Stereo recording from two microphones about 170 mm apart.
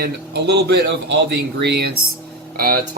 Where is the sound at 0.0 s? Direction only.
80° right.